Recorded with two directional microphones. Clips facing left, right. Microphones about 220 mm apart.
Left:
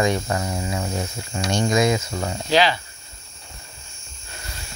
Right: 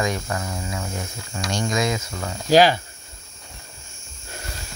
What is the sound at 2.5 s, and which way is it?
Speech, 45° right (ahead or behind).